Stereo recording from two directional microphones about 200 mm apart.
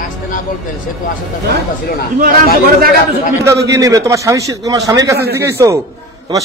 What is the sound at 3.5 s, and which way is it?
A man's voice, 15° right (ahead or behind).